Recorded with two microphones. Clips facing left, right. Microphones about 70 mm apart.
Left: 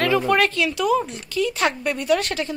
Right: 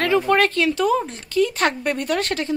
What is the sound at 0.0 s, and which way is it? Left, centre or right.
A woman's voice, right.